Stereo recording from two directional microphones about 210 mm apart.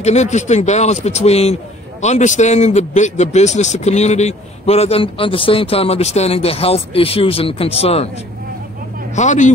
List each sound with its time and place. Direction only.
0.0 s a man's voice: 30° left (ahead or behind)
9.1 s a man's voice: 35° left (ahead or behind)